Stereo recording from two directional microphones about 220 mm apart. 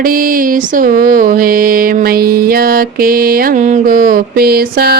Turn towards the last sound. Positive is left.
turn(degrees=-45)  # may be behind; listen again after turning